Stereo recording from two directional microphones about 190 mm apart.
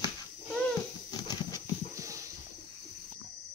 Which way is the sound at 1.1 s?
20° left (ahead or behind).